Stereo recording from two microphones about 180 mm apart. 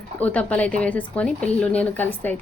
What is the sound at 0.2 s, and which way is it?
A woman's voice, 10° left (ahead or behind).